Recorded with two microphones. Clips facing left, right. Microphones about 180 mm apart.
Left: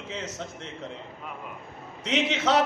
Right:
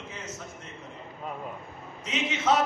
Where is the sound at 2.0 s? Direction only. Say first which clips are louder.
Left 2 dB; 75° left (ahead or behind).